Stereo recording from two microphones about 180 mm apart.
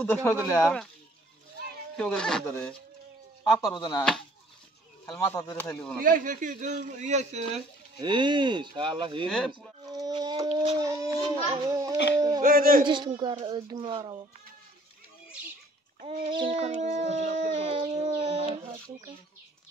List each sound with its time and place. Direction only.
0.0 s speech: 10° left (ahead or behind)
2.0 s speech: 5° left (ahead or behind)
3.5 s speech: 20° left (ahead or behind)
5.2 s speech: 15° left (ahead or behind)
6.0 s a man's voice: 45° right (ahead or behind)
8.0 s speech: 25° right (ahead or behind)
12.4 s a man's voice: 50° right (ahead or behind)
12.8 s speech: 25° right (ahead or behind)
16.0 s a child's voice: 40° right (ahead or behind)
16.3 s howl: 35° right (ahead or behind)
18.2 s a sound: 25° right (ahead or behind)